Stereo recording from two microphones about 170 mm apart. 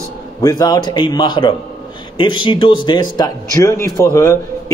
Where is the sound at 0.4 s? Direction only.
25° left (ahead or behind).